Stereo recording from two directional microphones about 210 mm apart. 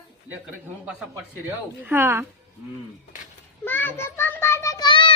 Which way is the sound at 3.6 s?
10° left (ahead or behind).